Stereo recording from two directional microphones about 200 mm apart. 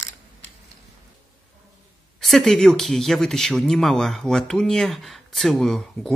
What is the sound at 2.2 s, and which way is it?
Speech, centre (ahead or behind).